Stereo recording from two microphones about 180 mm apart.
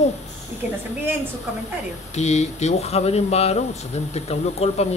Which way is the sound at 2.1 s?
40° left (ahead or behind).